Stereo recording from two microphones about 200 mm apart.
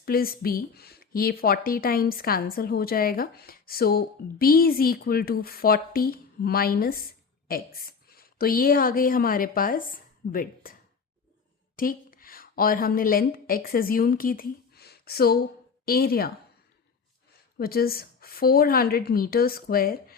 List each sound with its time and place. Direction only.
0.0 s a woman's voice: 50° left (ahead or behind)
11.8 s a woman's voice: 45° left (ahead or behind)
17.6 s speech: 50° left (ahead or behind)